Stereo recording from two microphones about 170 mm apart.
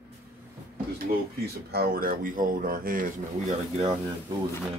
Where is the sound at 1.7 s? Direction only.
65° right (ahead or behind).